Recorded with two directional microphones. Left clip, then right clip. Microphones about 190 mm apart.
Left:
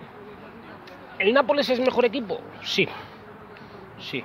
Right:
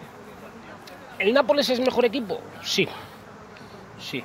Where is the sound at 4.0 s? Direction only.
15° right (ahead or behind).